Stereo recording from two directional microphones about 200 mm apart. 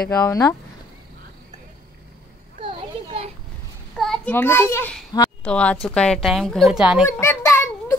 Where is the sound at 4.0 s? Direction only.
5° left (ahead or behind).